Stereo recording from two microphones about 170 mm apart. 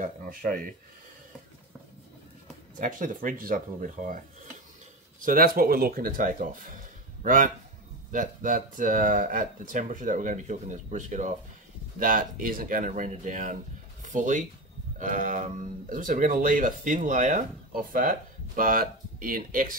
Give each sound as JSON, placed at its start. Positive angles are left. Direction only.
{"t": 0.0, "sound": "speech", "side_deg": -55}
{"t": 2.8, "sound": "speech", "side_deg": -50}
{"t": 5.2, "sound": "speech", "side_deg": -55}